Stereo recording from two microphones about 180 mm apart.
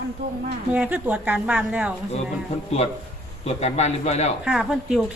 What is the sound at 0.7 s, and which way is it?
A woman's voice, 5° right (ahead or behind).